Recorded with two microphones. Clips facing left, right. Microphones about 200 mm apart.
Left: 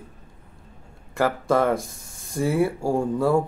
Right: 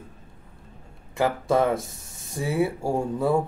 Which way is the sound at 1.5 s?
Centre (ahead or behind).